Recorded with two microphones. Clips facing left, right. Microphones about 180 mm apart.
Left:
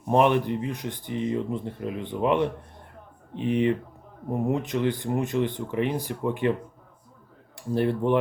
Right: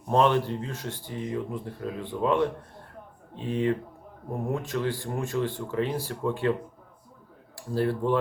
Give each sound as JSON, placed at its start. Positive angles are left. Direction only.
{"t": 0.1, "sound": "speech", "side_deg": 15}
{"t": 7.5, "sound": "speech", "side_deg": 20}